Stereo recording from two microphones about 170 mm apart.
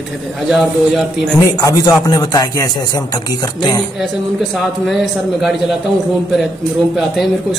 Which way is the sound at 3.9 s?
Centre (ahead or behind).